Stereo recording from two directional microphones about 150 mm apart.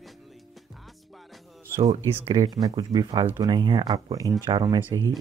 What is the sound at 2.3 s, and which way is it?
Speech, 25° right (ahead or behind).